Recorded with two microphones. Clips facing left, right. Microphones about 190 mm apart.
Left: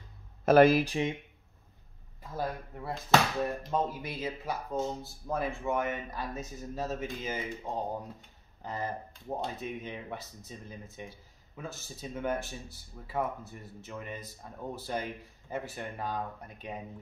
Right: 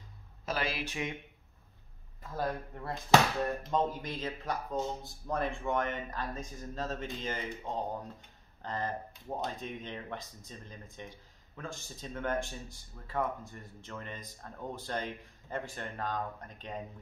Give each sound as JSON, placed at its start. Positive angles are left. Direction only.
{"t": 0.5, "sound": "speech", "side_deg": 50}
{"t": 2.3, "sound": "speech", "side_deg": 5}